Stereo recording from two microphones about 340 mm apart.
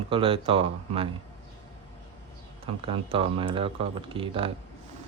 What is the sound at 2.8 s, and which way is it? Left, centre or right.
Speech, centre.